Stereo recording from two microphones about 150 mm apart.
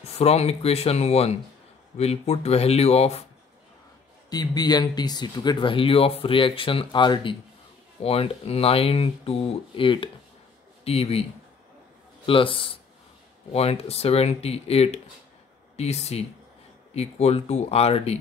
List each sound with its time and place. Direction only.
0.2 s speech: 45° left (ahead or behind)
4.3 s speech: 25° left (ahead or behind)
12.3 s speech: 35° left (ahead or behind)